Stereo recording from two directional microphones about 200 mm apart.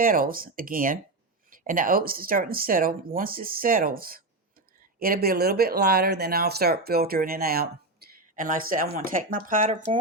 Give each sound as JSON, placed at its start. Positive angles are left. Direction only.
{"t": 0.0, "sound": "speech", "side_deg": -45}
{"t": 8.0, "sound": "a sound", "side_deg": -50}
{"t": 8.4, "sound": "speech", "side_deg": -40}